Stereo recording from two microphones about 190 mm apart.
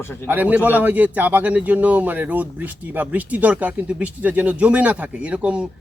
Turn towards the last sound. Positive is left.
turn(degrees=-5)  # may be behind; listen again after turning